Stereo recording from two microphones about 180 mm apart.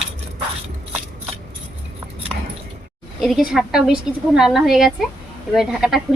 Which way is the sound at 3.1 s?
Centre (ahead or behind).